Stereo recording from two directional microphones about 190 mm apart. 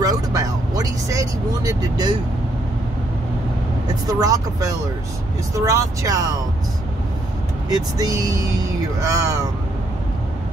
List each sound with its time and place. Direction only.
0.0 s speech: 15° right (ahead or behind)
4.1 s speech: 20° right (ahead or behind)
7.7 s speech: 20° right (ahead or behind)